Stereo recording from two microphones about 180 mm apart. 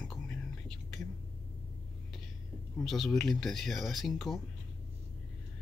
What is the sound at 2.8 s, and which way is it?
Speech, centre (ahead or behind).